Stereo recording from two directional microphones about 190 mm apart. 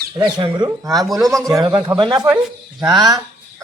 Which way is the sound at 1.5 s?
20° right (ahead or behind).